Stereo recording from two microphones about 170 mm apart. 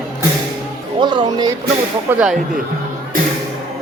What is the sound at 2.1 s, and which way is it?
Speech, 10° right (ahead or behind).